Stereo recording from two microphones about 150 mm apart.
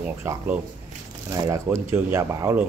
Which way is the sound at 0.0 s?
15° right (ahead or behind).